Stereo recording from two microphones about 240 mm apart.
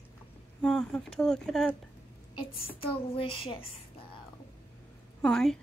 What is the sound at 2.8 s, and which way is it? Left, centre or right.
A child's voice, left.